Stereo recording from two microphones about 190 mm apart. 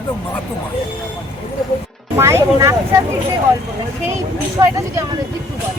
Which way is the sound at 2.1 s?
15° right (ahead or behind).